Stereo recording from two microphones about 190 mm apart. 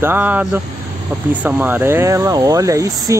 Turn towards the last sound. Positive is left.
turn(degrees=-15)  # may be behind; listen again after turning